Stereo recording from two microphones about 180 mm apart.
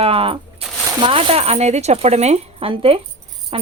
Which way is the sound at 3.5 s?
30° right (ahead or behind).